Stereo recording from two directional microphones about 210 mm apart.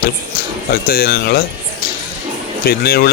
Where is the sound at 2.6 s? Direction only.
45° left (ahead or behind).